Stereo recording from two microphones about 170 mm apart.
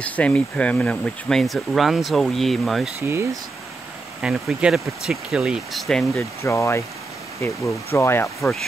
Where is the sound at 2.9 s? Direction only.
15° right (ahead or behind).